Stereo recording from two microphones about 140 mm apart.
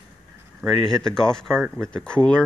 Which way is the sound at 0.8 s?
5° left (ahead or behind).